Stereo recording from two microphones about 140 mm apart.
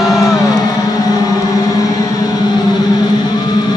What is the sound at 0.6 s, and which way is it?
Music, 25° left (ahead or behind).